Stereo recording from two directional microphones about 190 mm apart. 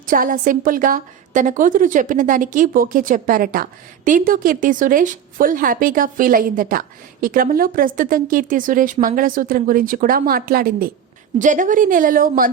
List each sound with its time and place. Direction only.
0.1 s a woman's voice: 45° right (ahead or behind)